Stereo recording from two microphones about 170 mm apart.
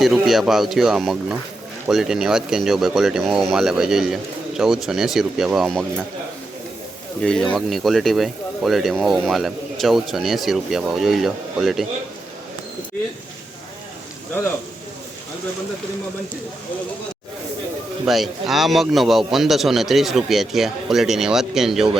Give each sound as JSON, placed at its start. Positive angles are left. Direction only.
{"t": 0.0, "sound": "speech", "side_deg": 0}
{"t": 7.2, "sound": "speech", "side_deg": 5}
{"t": 18.0, "sound": "speech", "side_deg": 0}